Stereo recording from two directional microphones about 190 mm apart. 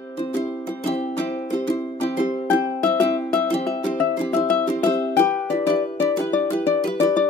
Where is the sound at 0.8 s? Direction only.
30° left (ahead or behind).